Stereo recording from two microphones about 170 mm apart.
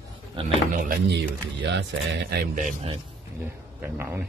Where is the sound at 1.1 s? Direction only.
90° right.